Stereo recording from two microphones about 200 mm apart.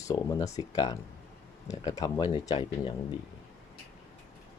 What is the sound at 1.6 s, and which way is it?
Speech, 15° left (ahead or behind).